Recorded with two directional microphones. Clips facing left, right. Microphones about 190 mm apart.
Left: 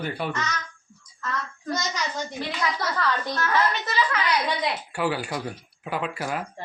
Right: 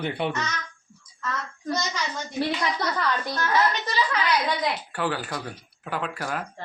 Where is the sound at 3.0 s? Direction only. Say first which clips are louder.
Left 1 dB; 15° right (ahead or behind).